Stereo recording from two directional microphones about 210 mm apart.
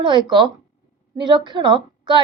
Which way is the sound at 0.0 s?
20° right (ahead or behind).